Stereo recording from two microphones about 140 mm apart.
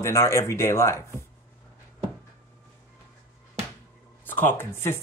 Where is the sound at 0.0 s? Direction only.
20° left (ahead or behind).